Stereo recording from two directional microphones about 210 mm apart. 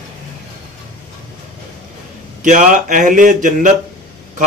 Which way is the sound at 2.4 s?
40° right (ahead or behind).